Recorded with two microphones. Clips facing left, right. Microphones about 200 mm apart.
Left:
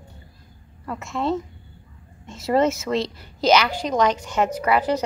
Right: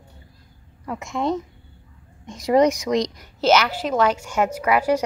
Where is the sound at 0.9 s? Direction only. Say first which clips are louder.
Right 1 dB; 15° right (ahead or behind).